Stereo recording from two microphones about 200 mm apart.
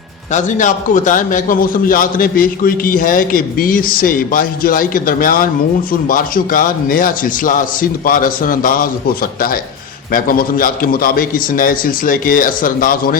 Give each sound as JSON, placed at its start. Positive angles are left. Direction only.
{"t": 0.3, "sound": "a man's voice", "side_deg": 35}